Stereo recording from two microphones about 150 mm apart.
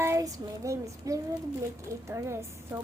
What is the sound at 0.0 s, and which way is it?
Child singing, 20° right (ahead or behind).